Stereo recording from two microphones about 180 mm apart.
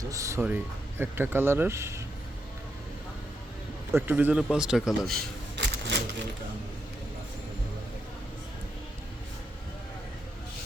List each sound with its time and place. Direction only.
0.1 s speech: 15° right (ahead or behind)
3.9 s speech: 10° right (ahead or behind)
5.1 s a sound: 70° right (ahead or behind)